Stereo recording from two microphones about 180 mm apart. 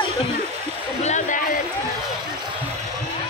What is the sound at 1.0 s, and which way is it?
Speech, 45° left (ahead or behind).